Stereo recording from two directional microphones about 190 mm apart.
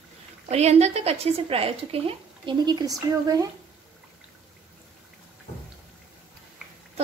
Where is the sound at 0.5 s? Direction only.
35° right (ahead or behind).